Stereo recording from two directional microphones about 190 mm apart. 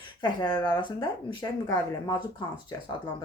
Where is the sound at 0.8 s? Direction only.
25° left (ahead or behind).